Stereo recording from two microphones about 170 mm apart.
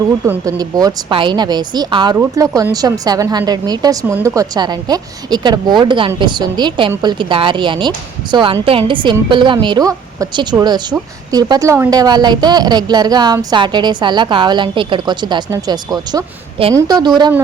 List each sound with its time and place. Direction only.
0.3 s a woman's voice: 20° right (ahead or behind)